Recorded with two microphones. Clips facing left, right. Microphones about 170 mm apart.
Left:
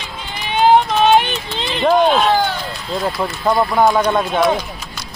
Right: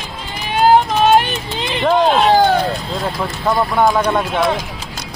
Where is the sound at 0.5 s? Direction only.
5° right (ahead or behind).